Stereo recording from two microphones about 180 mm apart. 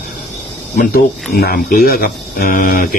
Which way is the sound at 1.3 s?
55° left (ahead or behind).